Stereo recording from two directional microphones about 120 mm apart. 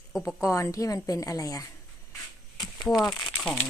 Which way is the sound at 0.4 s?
25° left (ahead or behind).